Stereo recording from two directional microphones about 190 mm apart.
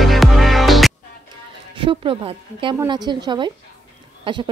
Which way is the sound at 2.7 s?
20° right (ahead or behind).